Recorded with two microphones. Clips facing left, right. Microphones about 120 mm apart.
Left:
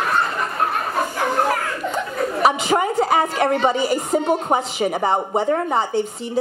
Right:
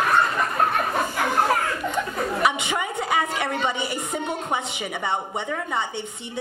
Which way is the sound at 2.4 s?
35° left (ahead or behind).